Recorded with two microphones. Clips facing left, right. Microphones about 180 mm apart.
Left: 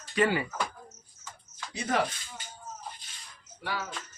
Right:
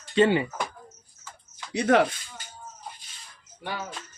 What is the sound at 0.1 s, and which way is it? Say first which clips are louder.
Speech: right 6 dB; 25° right (ahead or behind).